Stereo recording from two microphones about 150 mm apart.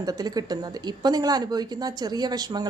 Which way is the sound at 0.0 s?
25° right (ahead or behind).